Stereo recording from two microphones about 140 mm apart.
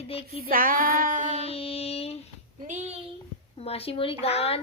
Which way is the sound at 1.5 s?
45° left (ahead or behind).